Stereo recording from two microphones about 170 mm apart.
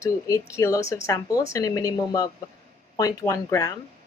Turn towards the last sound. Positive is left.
turn(degrees=20)  # may be behind; listen again after turning